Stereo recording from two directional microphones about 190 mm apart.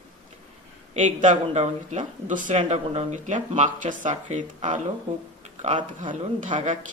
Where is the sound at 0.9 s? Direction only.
40° right (ahead or behind).